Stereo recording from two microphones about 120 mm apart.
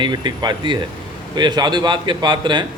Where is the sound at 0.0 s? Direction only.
35° right (ahead or behind).